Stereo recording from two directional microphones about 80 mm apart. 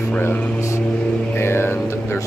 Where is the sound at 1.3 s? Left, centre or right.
Left.